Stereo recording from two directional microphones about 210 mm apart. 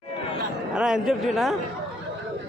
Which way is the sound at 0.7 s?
5° right (ahead or behind).